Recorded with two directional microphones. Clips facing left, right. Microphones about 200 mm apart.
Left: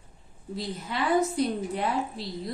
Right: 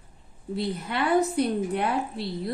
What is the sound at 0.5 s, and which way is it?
A woman's voice, 60° right (ahead or behind).